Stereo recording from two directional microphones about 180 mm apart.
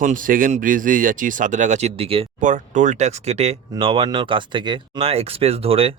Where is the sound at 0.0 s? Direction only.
45° right (ahead or behind).